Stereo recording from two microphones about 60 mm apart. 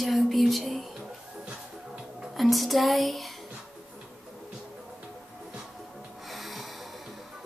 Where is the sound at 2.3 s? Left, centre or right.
Centre.